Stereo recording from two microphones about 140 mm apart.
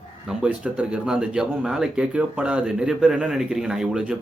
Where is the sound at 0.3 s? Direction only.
5° right (ahead or behind).